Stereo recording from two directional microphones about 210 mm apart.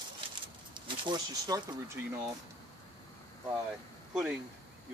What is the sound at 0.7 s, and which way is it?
Speech, 20° right (ahead or behind).